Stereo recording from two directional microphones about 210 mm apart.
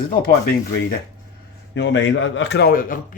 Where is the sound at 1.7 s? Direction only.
60° left (ahead or behind); by 2.9 s 45° left (ahead or behind).